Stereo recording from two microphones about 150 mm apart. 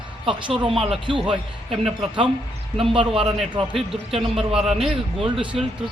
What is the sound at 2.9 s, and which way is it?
Speech, 35° right (ahead or behind).